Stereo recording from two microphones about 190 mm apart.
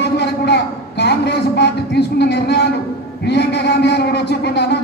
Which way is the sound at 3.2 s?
60° left (ahead or behind).